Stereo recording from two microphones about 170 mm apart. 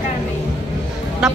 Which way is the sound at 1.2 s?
5° right (ahead or behind).